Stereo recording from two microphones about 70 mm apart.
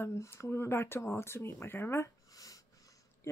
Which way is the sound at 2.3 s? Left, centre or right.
Left.